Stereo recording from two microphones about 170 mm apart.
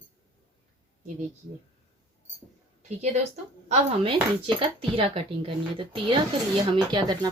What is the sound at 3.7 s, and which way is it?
Speech, 30° right (ahead or behind).